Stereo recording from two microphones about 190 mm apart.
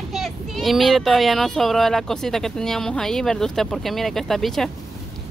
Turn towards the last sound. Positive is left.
turn(degrees=0)  # may be behind; listen again after turning